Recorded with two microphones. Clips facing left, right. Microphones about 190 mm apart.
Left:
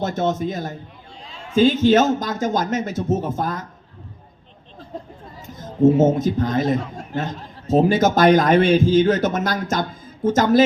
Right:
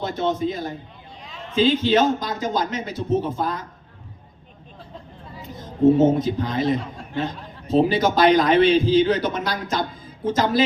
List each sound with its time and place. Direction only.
0.0 s a man's voice: 45° left (ahead or behind)
6.1 s a man's voice: 45° left (ahead or behind)